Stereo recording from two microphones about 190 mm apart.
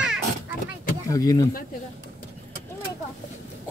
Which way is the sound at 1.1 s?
20° left (ahead or behind).